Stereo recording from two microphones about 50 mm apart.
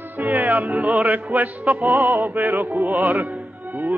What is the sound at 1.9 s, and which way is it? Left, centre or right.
Music, right.